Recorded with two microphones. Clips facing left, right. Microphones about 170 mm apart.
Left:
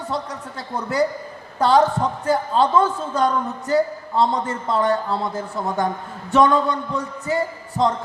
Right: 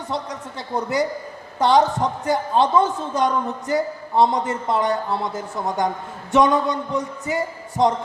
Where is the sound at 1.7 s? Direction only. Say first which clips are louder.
Even; 15° right (ahead or behind).